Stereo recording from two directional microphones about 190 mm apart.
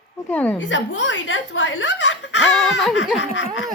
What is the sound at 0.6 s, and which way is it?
Speech, 80° left.